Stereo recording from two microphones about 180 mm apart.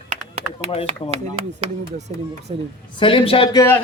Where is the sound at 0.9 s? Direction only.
35° right (ahead or behind).